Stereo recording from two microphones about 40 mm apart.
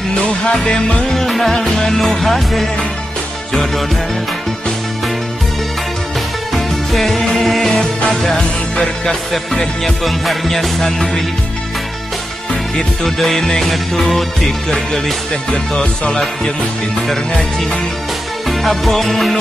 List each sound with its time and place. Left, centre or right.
0.1 s music: left
1.1 s music: centre
6.5 s music: centre
12.7 s music: centre
18.5 s music: centre